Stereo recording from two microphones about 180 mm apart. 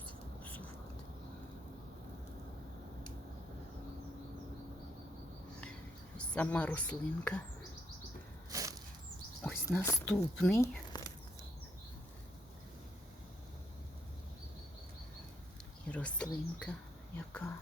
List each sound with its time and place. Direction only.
6.3 s speech: 5° left (ahead or behind)
8.4 s a sound: 20° right (ahead or behind)
9.4 s speech: 15° left (ahead or behind)
15.9 s speech: 5° left (ahead or behind)